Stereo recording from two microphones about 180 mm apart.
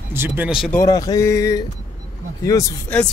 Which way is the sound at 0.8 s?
20° left (ahead or behind).